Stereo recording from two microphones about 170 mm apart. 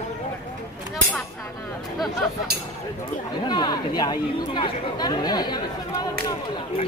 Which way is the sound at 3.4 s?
25° left (ahead or behind).